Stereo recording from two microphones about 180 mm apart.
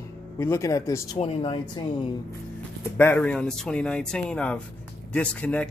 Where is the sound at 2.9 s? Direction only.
10° left (ahead or behind).